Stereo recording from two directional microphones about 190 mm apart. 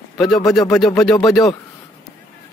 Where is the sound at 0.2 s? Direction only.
Centre (ahead or behind).